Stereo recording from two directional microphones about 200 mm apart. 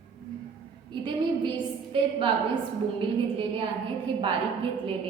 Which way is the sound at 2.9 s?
25° right (ahead or behind).